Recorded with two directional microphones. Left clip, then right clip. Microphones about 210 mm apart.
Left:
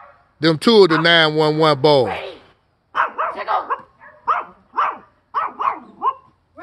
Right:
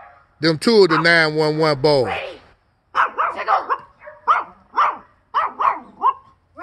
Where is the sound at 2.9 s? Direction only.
25° right (ahead or behind).